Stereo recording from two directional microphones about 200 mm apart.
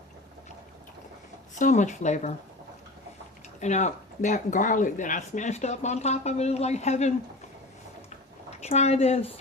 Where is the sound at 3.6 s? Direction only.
35° left (ahead or behind).